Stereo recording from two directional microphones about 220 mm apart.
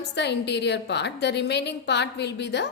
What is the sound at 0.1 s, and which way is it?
A woman's voice, 50° left (ahead or behind).